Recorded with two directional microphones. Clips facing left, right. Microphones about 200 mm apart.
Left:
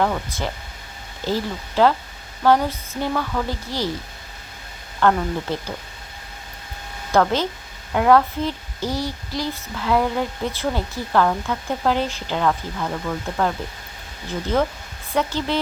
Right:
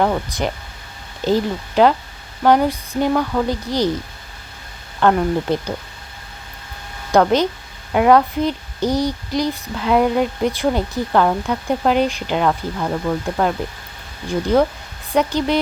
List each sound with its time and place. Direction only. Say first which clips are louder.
0.0 s speech: right 4 dB; 20° right (ahead or behind)
4.9 s speech: right 4 dB; 20° right (ahead or behind)
7.1 s speech: right 4 dB; 15° right (ahead or behind)
15.1 s speech: right 5 dB; 15° right (ahead or behind)